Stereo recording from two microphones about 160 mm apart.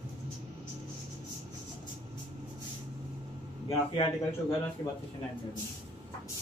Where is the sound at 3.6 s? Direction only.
30° left (ahead or behind).